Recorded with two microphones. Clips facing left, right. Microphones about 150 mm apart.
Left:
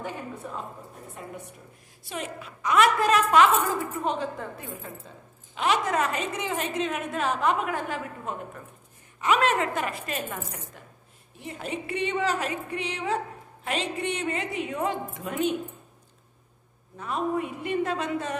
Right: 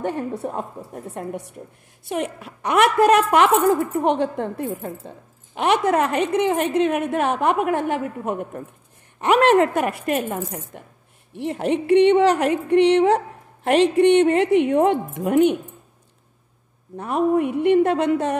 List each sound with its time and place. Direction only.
0.0 s a woman's voice: 70° right (ahead or behind)
2.0 s a woman's voice: 60° right (ahead or behind)
11.3 s a woman's voice: 70° right (ahead or behind)
16.9 s a woman's voice: 65° right (ahead or behind)